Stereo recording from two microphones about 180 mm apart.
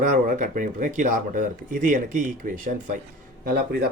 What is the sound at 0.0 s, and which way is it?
Speech, 45° right (ahead or behind).